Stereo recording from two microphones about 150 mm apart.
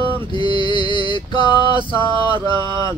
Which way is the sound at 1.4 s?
30° right (ahead or behind).